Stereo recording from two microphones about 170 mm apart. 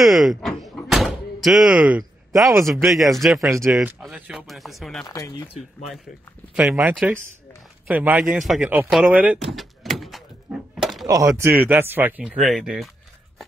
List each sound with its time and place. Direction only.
0.0 s door: centre (ahead or behind)
2.6 s speech: centre (ahead or behind)
3.4 s speech: 15° right (ahead or behind)
3.7 s speech: centre (ahead or behind)
5.1 s speech: 20° left (ahead or behind)
6.5 s speech: 5° right (ahead or behind)
9.4 s door: centre (ahead or behind)
11.1 s speech: 20° right (ahead or behind)
12.4 s speech: centre (ahead or behind)